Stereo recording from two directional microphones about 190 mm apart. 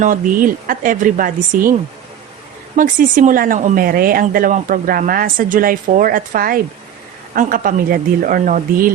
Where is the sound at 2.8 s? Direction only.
45° right (ahead or behind).